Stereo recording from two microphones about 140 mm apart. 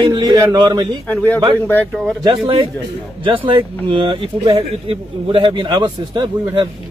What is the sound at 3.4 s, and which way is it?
Speech, 40° right (ahead or behind).